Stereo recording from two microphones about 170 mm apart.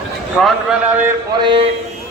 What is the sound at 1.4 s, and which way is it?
Speech, 30° right (ahead or behind).